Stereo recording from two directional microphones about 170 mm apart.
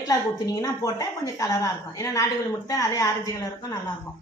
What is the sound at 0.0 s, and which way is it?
Speech, 20° left (ahead or behind).